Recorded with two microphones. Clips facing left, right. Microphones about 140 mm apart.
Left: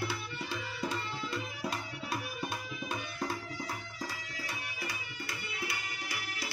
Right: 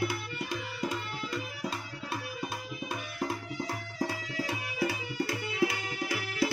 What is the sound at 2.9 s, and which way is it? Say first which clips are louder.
Music: right 2 dB; 5° right (ahead or behind).